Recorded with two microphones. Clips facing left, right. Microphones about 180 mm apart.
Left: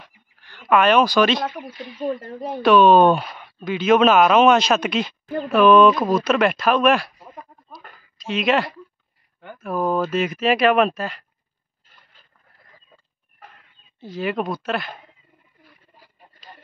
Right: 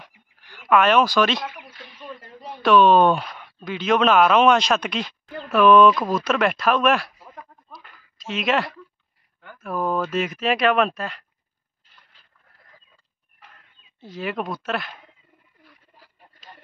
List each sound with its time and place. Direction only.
0.0 s a sound: 10° right (ahead or behind)
0.7 s speech: centre (ahead or behind)
2.0 s speech: 50° left (ahead or behind)
2.6 s speech: centre (ahead or behind)
7.8 s a sound: 45° left (ahead or behind)
8.2 s speech: centre (ahead or behind)
13.9 s speech: centre (ahead or behind)